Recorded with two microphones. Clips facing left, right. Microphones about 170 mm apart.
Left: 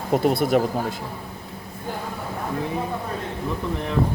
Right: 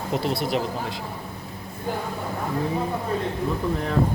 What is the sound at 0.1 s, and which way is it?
Speech, 50° left (ahead or behind).